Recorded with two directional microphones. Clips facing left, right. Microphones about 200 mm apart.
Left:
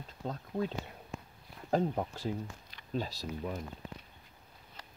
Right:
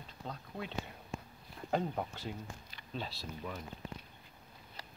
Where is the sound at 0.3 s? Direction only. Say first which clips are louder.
Left 8 dB; 40° left (ahead or behind).